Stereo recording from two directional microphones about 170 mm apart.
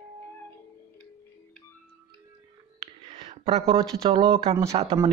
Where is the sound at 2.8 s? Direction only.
35° right (ahead or behind).